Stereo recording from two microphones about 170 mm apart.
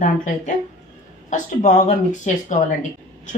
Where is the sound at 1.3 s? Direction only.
50° left (ahead or behind).